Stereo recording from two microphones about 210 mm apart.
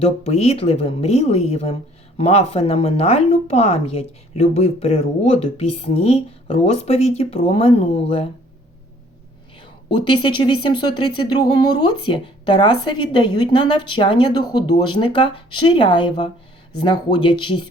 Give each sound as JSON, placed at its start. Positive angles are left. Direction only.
{"t": 0.0, "sound": "speech", "side_deg": 30}
{"t": 10.0, "sound": "speech", "side_deg": 25}